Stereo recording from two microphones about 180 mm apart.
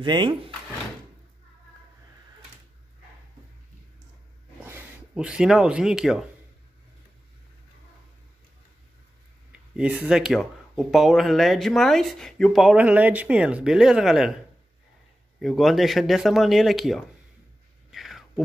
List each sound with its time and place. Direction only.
0.0 s speech: 25° right (ahead or behind)
4.6 s speech: 5° right (ahead or behind)
9.5 s speech: 5° right (ahead or behind)
15.4 s speech: centre (ahead or behind)
17.9 s a sound: centre (ahead or behind)